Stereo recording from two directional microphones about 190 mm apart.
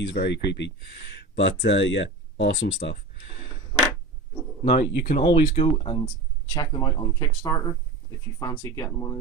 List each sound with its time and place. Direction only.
0.0 s speech: 65° left (ahead or behind)
4.7 s speech: 50° left (ahead or behind)
5.3 s speech: 30° left (ahead or behind)